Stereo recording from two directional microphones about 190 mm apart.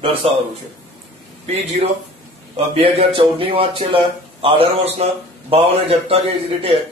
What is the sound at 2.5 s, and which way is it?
A man's voice, 30° right (ahead or behind).